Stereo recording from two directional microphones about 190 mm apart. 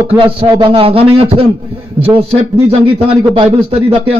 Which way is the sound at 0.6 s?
30° right (ahead or behind).